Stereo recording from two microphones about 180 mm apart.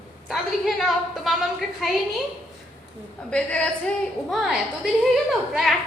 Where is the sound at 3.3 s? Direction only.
5° left (ahead or behind).